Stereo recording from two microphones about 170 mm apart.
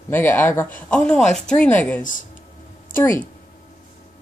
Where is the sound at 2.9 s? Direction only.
15° left (ahead or behind).